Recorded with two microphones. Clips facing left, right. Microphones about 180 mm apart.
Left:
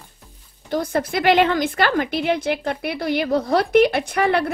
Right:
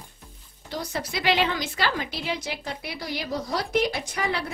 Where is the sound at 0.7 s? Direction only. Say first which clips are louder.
Left 9 dB; 55° left (ahead or behind).